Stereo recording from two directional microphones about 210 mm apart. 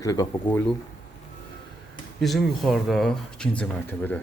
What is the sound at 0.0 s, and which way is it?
Speech, 15° left (ahead or behind).